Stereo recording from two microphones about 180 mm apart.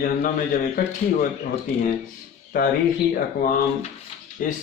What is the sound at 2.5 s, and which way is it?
A man's voice, 50° left (ahead or behind).